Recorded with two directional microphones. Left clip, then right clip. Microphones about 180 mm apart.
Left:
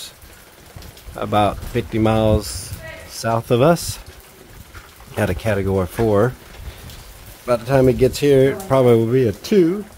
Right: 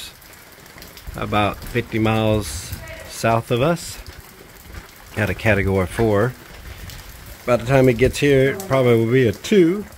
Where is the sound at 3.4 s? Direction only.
20° left (ahead or behind).